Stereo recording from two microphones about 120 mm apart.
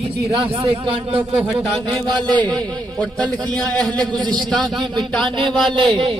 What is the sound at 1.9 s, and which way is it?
Speech, 40° right (ahead or behind).